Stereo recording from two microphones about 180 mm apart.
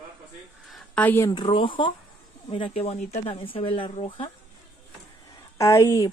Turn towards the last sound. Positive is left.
turn(degrees=15)  # may be behind; listen again after turning